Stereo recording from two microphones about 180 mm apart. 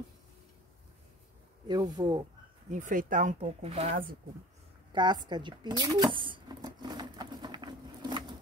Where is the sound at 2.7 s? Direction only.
45° right (ahead or behind).